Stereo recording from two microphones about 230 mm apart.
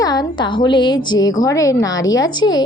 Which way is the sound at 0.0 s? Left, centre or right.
Centre.